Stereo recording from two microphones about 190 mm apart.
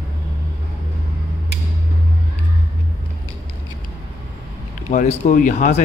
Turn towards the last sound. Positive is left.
turn(degrees=40)  # may be behind; listen again after turning